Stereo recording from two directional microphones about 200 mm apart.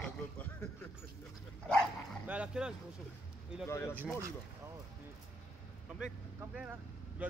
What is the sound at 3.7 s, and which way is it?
Speech, 15° left (ahead or behind).